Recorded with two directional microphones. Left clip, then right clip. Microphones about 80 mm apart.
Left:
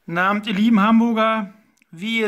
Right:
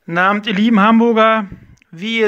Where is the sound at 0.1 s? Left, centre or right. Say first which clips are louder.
Right 5 dB; right.